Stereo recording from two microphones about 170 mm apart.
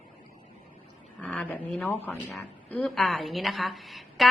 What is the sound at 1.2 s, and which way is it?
Speech, 10° left (ahead or behind).